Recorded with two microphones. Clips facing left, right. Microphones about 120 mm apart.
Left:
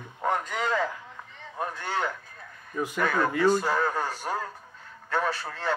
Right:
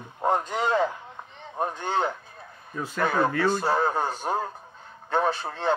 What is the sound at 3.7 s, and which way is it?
Speech, 20° right (ahead or behind).